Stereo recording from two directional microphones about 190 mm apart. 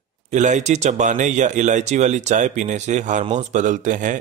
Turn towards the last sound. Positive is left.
turn(degrees=-40)  # may be behind; listen again after turning